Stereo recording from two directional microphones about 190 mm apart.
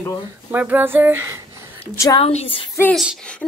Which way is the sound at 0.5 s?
10° right (ahead or behind).